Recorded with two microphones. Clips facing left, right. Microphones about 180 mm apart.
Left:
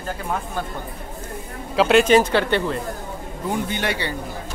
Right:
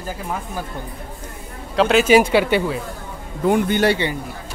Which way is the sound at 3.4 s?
70° right (ahead or behind).